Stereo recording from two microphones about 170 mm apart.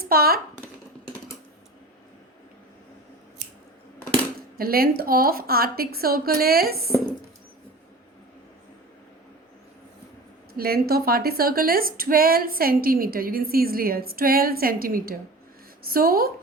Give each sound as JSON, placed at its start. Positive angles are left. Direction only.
{"t": 0.1, "sound": "speech", "side_deg": -60}
{"t": 4.5, "sound": "a woman's voice", "side_deg": -60}
{"t": 10.6, "sound": "a woman's voice", "side_deg": -65}